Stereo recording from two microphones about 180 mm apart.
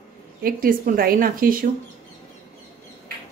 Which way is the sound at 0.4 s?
50° right (ahead or behind).